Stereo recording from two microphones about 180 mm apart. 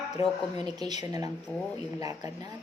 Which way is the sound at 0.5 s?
20° right (ahead or behind).